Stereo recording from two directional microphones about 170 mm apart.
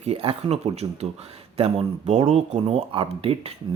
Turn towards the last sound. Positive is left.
turn(degrees=-35)  # may be behind; listen again after turning